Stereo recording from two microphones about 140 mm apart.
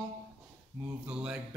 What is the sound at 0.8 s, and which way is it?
Speech, 10° right (ahead or behind).